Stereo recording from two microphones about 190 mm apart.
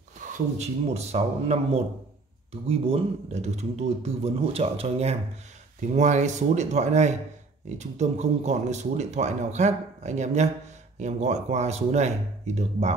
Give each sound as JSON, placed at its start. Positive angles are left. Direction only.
{"t": 0.6, "sound": "speech", "side_deg": -35}